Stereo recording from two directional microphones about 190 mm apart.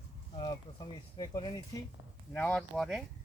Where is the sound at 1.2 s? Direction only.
20° left (ahead or behind).